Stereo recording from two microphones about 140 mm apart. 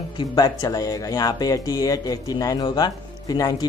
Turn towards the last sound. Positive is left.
turn(degrees=30)  # may be behind; listen again after turning